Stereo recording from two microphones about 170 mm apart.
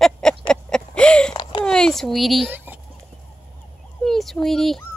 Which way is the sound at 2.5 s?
10° right (ahead or behind).